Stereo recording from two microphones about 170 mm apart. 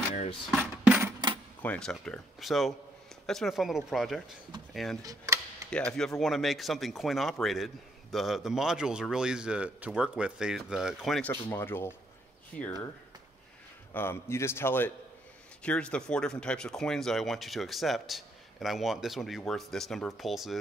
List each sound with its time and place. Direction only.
0.5 s music: 5° right (ahead or behind)
1.6 s speech: 5° left (ahead or behind)
5.0 s a sound: 20° right (ahead or behind)
5.7 s a man's voice: 5° left (ahead or behind)
13.9 s a man's voice: 15° left (ahead or behind)